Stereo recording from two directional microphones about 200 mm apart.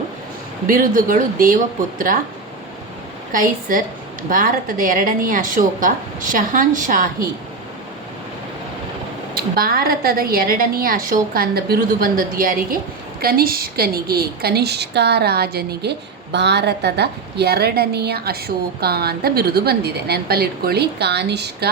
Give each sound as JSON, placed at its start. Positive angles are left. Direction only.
{"t": 0.7, "sound": "a woman's voice", "side_deg": -45}
{"t": 3.3, "sound": "a woman's voice", "side_deg": -45}
{"t": 9.6, "sound": "a woman's voice", "side_deg": -50}